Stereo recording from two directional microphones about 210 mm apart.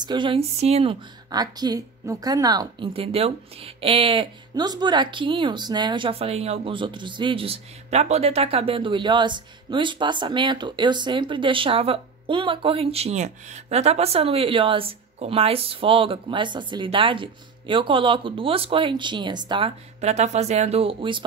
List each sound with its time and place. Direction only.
0.0 s speech: 20° right (ahead or behind)